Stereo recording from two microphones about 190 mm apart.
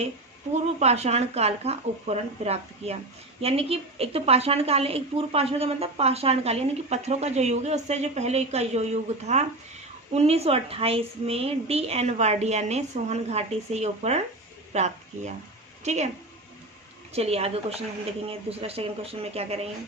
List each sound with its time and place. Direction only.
0.5 s a woman's voice: 35° right (ahead or behind)
17.2 s a woman's voice: 30° right (ahead or behind)